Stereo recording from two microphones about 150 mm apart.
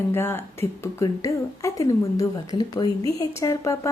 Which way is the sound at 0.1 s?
15° left (ahead or behind).